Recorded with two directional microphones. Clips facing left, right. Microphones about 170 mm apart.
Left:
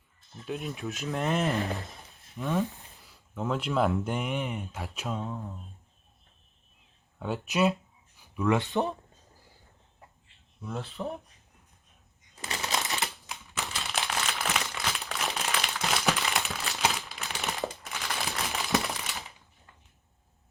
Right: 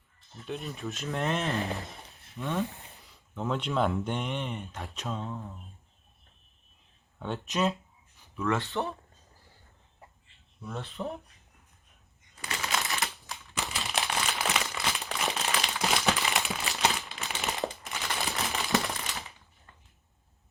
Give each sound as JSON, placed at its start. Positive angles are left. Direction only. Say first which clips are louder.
{"t": 0.4, "sound": "speech", "louder": "left 2 dB", "side_deg": 0}
{"t": 7.2, "sound": "speech", "louder": "left 3 dB", "side_deg": 5}
{"t": 8.2, "sound": "speech", "louder": "left 3 dB", "side_deg": 15}
{"t": 10.6, "sound": "speech", "louder": "left 1 dB", "side_deg": 0}
{"t": 12.4, "sound": "crumpling", "louder": "left 1 dB", "side_deg": 20}
{"t": 13.6, "sound": "crumpling", "louder": "right 1 dB", "side_deg": 0}
{"t": 18.5, "sound": "a sound", "louder": "left 1 dB", "side_deg": 0}